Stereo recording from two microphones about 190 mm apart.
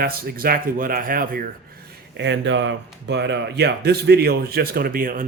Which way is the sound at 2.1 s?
70° right (ahead or behind).